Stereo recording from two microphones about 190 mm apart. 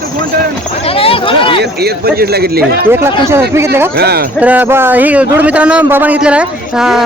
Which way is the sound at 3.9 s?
55° right (ahead or behind).